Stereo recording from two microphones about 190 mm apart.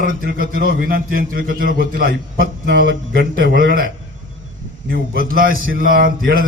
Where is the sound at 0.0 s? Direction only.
50° right (ahead or behind).